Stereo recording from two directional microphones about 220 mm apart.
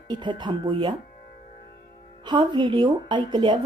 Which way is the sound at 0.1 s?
20° right (ahead or behind).